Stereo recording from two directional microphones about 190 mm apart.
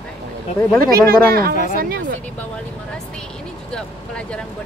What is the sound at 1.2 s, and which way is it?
Speech, 50° right (ahead or behind).